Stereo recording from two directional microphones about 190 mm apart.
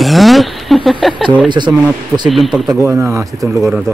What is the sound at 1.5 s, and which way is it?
Speech, 25° right (ahead or behind).